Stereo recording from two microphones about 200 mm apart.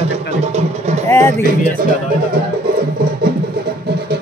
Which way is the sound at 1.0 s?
15° left (ahead or behind).